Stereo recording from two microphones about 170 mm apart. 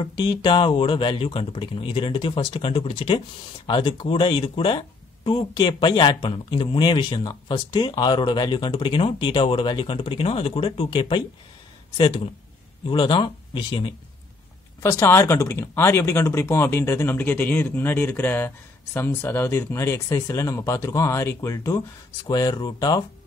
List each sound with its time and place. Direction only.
0.2 s speech: 30° left (ahead or behind)
12.8 s speech: 30° left (ahead or behind)
14.8 s speech: 15° left (ahead or behind)